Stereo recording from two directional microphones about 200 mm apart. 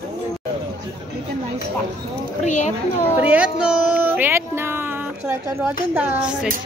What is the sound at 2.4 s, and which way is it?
Speech, 35° left (ahead or behind).